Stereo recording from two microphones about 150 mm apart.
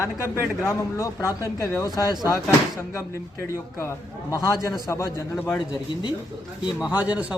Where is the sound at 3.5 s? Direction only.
20° left (ahead or behind).